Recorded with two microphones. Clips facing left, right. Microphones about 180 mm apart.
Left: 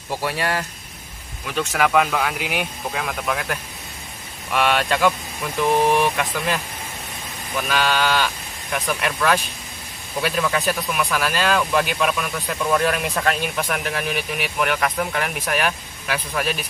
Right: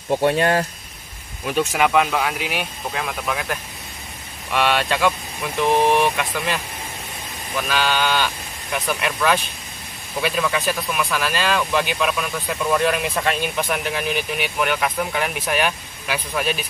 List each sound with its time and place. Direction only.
0.4 s speech: 30° right (ahead or behind)
1.4 s speech: 20° right (ahead or behind)
1.7 s speech: centre (ahead or behind)
5.6 s speech: 20° right (ahead or behind)
6.1 s speech: centre (ahead or behind)